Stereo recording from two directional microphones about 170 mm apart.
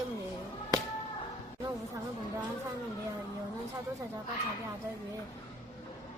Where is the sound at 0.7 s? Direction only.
20° right (ahead or behind).